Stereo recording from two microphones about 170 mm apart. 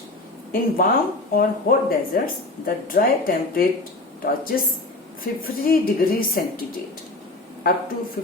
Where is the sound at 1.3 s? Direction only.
55° left (ahead or behind).